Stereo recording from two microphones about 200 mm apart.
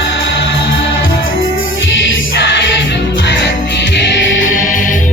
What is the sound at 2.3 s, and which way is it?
Music, 60° left (ahead or behind).